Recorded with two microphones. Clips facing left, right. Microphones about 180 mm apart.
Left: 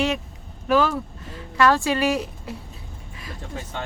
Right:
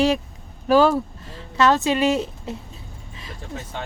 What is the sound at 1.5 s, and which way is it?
A woman's voice, 20° right (ahead or behind).